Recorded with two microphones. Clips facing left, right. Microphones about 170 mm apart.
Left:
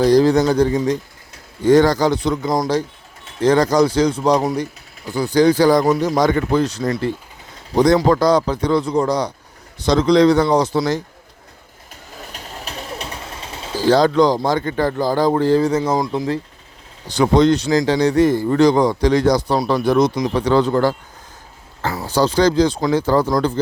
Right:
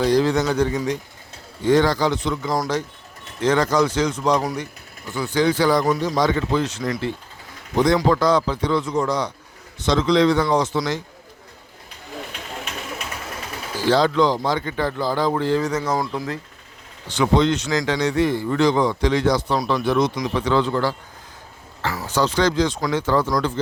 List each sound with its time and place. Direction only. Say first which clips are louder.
0.0 s speech: left 5 dB; 40° left (ahead or behind)
12.3 s a sound: even; 35° left (ahead or behind)
13.8 s speech: left 4 dB; 40° left (ahead or behind); by 16.4 s 25° left (ahead or behind)
17.1 s speech: left 5 dB; 40° left (ahead or behind)
21.9 s speech: left 4 dB; 35° left (ahead or behind)